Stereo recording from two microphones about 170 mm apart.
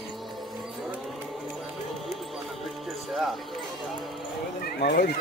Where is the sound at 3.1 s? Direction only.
Centre (ahead or behind).